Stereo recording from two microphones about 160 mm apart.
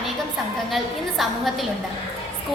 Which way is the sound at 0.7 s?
Centre (ahead or behind).